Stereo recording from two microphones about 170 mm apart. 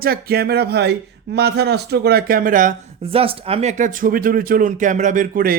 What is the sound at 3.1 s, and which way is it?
Speech, 35° right (ahead or behind).